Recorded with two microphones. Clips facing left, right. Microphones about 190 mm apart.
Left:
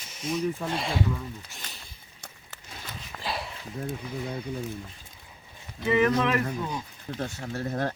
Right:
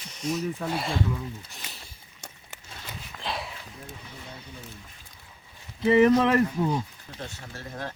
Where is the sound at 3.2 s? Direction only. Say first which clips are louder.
Even; centre (ahead or behind).